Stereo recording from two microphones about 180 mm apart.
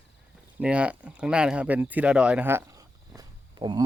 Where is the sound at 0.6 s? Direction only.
5° right (ahead or behind).